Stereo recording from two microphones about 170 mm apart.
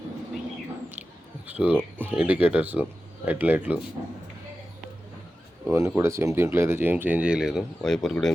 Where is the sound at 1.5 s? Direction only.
10° right (ahead or behind).